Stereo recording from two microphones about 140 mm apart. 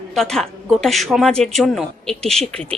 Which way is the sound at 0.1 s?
5° left (ahead or behind).